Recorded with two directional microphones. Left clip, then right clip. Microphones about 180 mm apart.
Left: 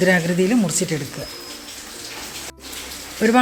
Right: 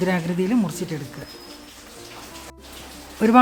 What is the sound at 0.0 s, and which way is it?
Speech, 10° right (ahead or behind).